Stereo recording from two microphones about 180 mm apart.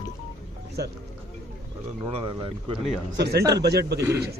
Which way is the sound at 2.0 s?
30° right (ahead or behind).